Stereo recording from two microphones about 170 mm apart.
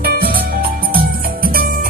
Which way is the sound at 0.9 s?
60° right (ahead or behind).